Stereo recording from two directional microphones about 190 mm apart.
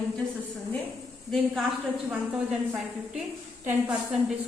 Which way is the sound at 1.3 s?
Centre (ahead or behind).